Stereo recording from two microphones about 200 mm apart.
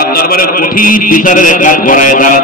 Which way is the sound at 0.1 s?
45° left (ahead or behind).